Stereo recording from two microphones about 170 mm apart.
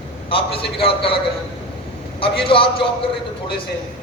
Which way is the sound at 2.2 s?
30° left (ahead or behind).